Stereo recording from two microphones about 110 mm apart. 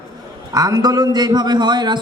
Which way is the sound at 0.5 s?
35° right (ahead or behind).